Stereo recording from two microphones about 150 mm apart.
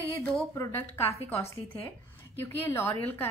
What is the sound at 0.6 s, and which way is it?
A woman's voice, 15° left (ahead or behind).